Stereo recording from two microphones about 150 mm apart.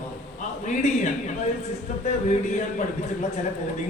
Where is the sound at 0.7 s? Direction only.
55° left (ahead or behind).